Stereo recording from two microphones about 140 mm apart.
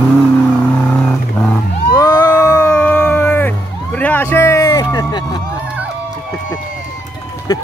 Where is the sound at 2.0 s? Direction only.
20° left (ahead or behind).